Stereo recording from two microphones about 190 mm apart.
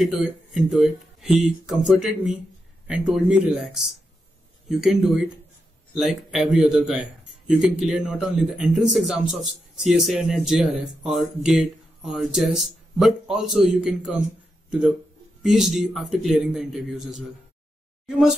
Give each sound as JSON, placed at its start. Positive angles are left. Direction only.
{"t": 0.0, "sound": "speech", "side_deg": 0}
{"t": 15.4, "sound": "speech", "side_deg": 0}